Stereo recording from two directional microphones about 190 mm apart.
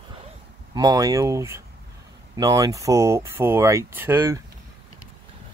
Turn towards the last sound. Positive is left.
turn(degrees=-15)  # may be behind; listen again after turning